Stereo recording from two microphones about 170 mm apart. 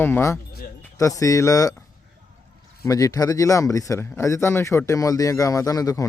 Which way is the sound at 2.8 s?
20° left (ahead or behind).